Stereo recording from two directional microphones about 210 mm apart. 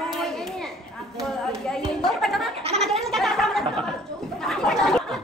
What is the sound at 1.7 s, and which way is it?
Speech, centre (ahead or behind).